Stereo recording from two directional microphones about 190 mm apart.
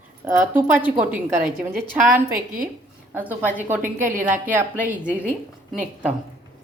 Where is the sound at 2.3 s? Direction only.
45° right (ahead or behind).